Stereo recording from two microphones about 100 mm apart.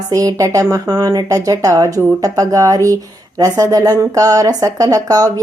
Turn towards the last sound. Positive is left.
turn(degrees=-35)  # may be behind; listen again after turning